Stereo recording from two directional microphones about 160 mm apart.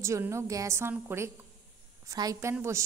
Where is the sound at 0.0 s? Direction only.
15° right (ahead or behind).